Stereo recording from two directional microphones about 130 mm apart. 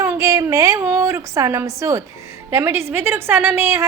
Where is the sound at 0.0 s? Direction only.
25° right (ahead or behind).